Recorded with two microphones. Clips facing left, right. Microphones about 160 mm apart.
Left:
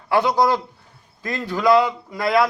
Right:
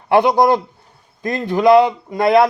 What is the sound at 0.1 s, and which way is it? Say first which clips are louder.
A man's voice: right 5 dB; 20° right (ahead or behind).